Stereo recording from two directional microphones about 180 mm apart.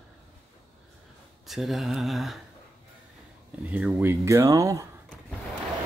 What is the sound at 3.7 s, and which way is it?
Speech, 10° right (ahead or behind).